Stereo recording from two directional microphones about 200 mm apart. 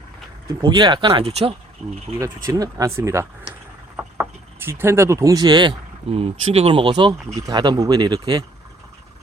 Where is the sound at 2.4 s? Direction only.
20° right (ahead or behind).